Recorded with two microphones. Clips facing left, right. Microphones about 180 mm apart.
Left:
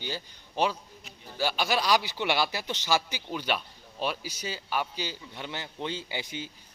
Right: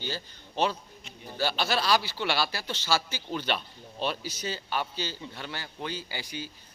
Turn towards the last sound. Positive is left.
turn(degrees=20)  # may be behind; listen again after turning